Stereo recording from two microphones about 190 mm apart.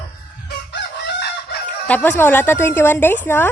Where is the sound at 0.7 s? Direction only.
60° left (ahead or behind).